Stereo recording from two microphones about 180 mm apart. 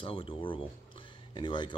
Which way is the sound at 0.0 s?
30° left (ahead or behind).